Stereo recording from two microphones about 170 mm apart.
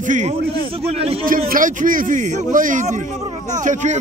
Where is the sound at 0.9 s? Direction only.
35° right (ahead or behind).